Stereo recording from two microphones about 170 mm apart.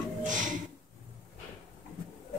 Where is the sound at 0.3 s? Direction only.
50° right (ahead or behind).